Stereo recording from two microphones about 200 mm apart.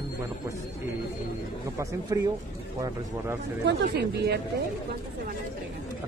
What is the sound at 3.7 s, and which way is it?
Speech, 55° right (ahead or behind).